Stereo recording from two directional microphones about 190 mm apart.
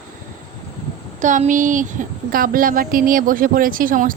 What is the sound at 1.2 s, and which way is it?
A woman's voice, 40° right (ahead or behind).